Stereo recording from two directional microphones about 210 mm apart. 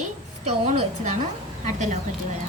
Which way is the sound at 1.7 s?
35° right (ahead or behind).